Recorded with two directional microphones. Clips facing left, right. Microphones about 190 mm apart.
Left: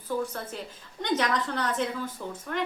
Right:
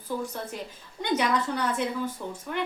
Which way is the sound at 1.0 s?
10° right (ahead or behind).